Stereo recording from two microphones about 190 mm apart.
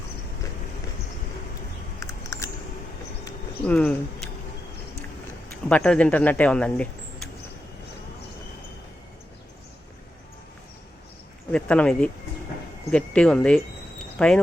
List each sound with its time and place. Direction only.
2.0 s a sound: 15° left (ahead or behind)
5.6 s speech: 5° left (ahead or behind)
11.5 s speech: 5° left (ahead or behind)